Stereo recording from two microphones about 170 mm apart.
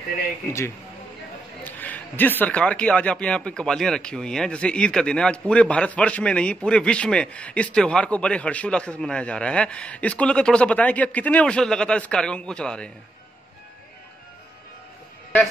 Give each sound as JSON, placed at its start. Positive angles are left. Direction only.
{"t": 0.5, "sound": "speech", "side_deg": 15}